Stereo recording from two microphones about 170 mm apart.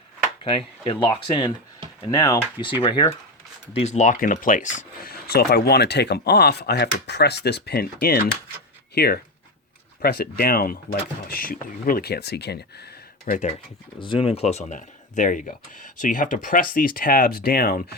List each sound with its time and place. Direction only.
0.4 s speech: 30° left (ahead or behind); by 13.5 s 55° left (ahead or behind)
14.0 s speech: 30° left (ahead or behind); by 17.8 s 60° left (ahead or behind)